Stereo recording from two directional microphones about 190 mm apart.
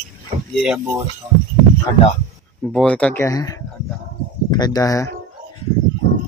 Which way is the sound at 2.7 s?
5° left (ahead or behind).